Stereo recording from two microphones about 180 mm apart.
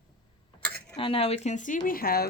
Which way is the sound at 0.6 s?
5° left (ahead or behind).